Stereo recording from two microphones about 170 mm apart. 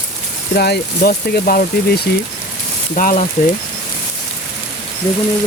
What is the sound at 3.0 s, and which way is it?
Speech, 50° left (ahead or behind).